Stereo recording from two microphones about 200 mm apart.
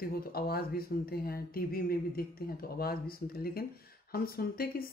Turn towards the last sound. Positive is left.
turn(degrees=50)  # may be behind; listen again after turning